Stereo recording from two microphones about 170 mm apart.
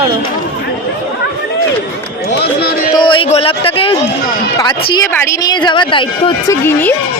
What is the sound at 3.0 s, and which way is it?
Music, 30° left (ahead or behind).